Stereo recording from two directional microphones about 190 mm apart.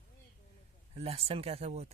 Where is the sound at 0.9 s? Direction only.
30° right (ahead or behind).